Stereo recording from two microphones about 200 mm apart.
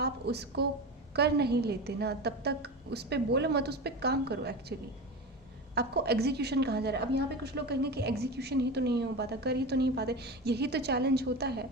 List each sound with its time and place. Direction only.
0.0 s a woman's voice: 55° right (ahead or behind)
5.7 s a woman's voice: 55° right (ahead or behind)